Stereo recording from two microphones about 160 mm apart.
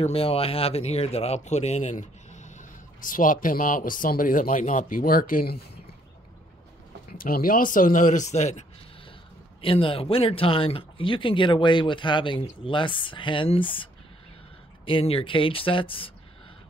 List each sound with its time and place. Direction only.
0.0 s speech: 40° left (ahead or behind); by 5.6 s 65° left (ahead or behind)
7.1 s speech: 65° left (ahead or behind); by 8.6 s 45° left (ahead or behind)
9.6 s speech: 35° left (ahead or behind)
14.9 s speech: 35° left (ahead or behind)